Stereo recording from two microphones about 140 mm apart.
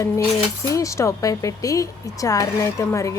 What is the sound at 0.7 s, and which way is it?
Speech, 20° left (ahead or behind).